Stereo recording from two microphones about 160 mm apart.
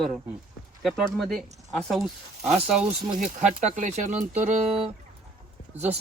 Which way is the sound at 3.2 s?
50° right (ahead or behind).